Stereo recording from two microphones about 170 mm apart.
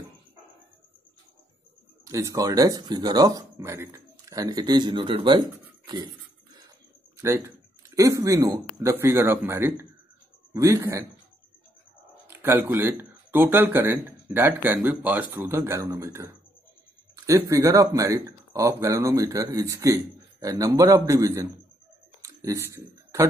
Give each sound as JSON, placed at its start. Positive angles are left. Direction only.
{"t": 2.0, "sound": "speech", "side_deg": -20}
{"t": 7.2, "sound": "speech", "side_deg": -15}
{"t": 12.3, "sound": "speech", "side_deg": -15}
{"t": 22.2, "sound": "a sound", "side_deg": -20}